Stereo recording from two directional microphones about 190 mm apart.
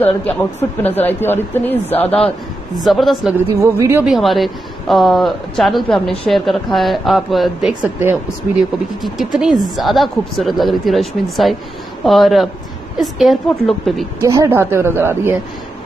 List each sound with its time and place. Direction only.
0.2 s speech: 10° left (ahead or behind)
2.0 s a man's voice: 30° left (ahead or behind)
2.8 s speech: centre (ahead or behind)
3.3 s speech: 15° right (ahead or behind)
4.1 s speech: centre (ahead or behind)
14.2 s speech: 15° right (ahead or behind)